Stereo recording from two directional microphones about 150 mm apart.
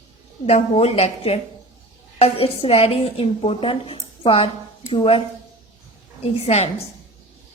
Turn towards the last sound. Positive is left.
turn(degrees=45)  # may be behind; listen again after turning